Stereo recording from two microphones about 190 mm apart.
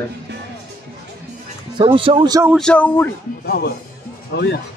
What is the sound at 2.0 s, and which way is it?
Speech, 25° right (ahead or behind).